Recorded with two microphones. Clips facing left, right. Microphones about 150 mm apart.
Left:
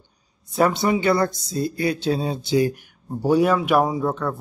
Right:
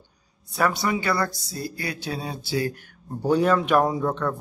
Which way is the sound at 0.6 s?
25° left (ahead or behind).